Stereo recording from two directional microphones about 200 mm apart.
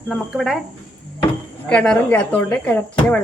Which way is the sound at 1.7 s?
5° left (ahead or behind).